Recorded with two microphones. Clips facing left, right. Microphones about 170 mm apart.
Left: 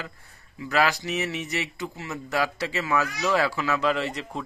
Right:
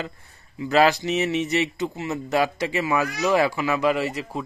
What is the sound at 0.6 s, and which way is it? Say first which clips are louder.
Speech: right 6 dB; 25° right (ahead or behind).